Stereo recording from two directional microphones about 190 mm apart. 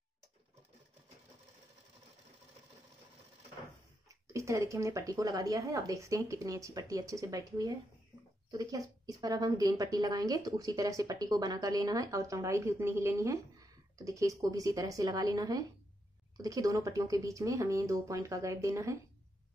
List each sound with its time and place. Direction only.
4.1 s a woman's voice: 15° right (ahead or behind)